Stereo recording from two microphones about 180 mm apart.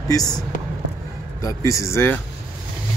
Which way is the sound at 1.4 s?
20° left (ahead or behind).